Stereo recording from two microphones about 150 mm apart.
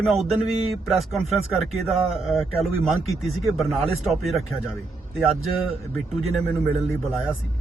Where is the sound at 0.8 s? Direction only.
Centre (ahead or behind).